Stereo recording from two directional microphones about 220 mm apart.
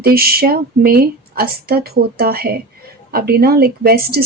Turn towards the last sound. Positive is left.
turn(degrees=-45)  # may be behind; listen again after turning